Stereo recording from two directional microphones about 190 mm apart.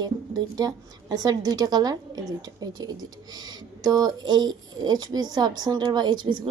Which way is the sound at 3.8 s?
20° right (ahead or behind).